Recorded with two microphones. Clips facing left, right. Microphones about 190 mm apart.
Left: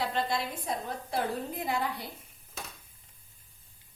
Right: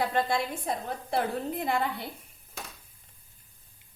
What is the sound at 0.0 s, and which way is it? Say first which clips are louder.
A woman's voice: right 3 dB; 50° right (ahead or behind).